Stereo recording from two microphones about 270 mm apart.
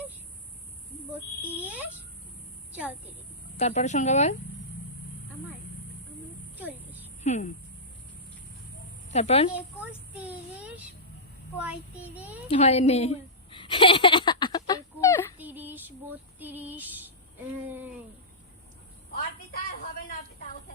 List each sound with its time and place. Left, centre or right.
1.4 s speech: centre
1.6 s speech: centre
3.6 s speech: left
7.3 s speech: left
9.0 s a woman's voice: left
9.8 s child singing: centre
12.5 s a sound: left
15.4 s female singing: centre
19.1 s a woman's voice: left